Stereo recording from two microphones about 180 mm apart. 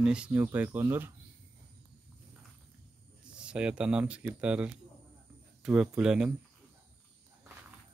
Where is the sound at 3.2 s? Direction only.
5° right (ahead or behind).